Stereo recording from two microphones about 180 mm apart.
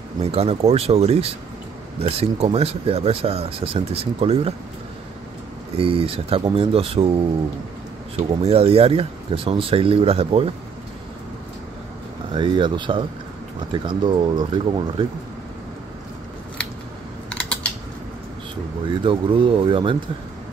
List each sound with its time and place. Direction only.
0.2 s speech: 35° right (ahead or behind)
5.8 s speech: 30° right (ahead or behind)
8.2 s speech: 35° right (ahead or behind)
12.3 s speech: 25° right (ahead or behind)
17.3 s typing: 5° left (ahead or behind)
18.9 s speech: 30° right (ahead or behind)